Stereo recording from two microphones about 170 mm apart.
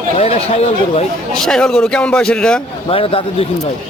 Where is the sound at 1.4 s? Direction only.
5° left (ahead or behind).